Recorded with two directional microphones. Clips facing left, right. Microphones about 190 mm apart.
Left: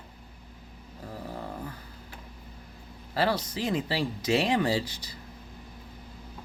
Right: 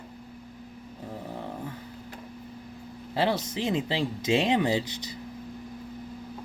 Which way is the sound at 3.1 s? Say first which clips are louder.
Right 1 dB; 20° right (ahead or behind).